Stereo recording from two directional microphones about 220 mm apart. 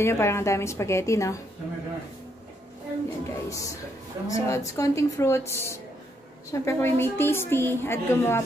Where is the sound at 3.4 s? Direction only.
15° left (ahead or behind).